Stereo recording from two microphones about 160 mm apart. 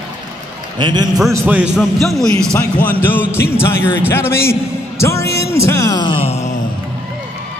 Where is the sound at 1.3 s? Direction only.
10° right (ahead or behind); by 6.5 s 40° left (ahead or behind).